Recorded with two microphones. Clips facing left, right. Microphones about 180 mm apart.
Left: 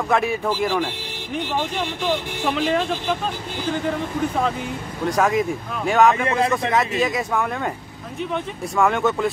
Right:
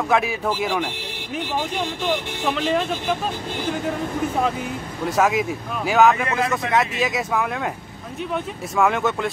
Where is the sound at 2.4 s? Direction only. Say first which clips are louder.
Left 1 dB; centre (ahead or behind).